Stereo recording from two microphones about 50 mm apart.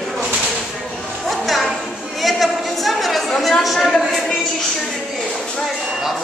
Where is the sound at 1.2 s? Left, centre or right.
Centre.